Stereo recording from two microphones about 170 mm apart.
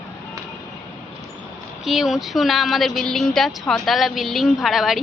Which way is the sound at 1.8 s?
Centre (ahead or behind).